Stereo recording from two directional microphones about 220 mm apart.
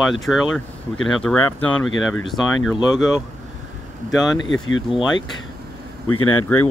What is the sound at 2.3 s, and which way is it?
Speech, centre (ahead or behind).